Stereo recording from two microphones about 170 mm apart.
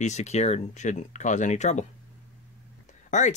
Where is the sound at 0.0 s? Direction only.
40° left (ahead or behind).